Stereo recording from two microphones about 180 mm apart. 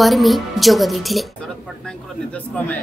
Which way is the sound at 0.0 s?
Centre (ahead or behind).